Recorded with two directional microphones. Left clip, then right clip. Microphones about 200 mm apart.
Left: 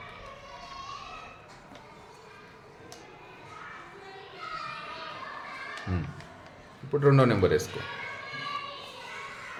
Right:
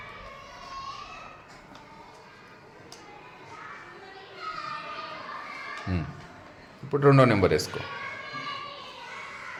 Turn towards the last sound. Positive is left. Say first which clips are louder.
# right 3 dB
turn(degrees=-15)  # may be behind; listen again after turning